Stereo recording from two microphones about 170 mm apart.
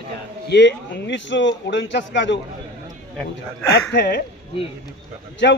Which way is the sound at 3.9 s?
80° left.